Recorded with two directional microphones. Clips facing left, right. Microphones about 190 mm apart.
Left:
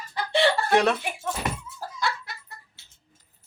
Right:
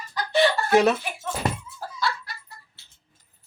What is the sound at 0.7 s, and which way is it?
Speech, centre (ahead or behind).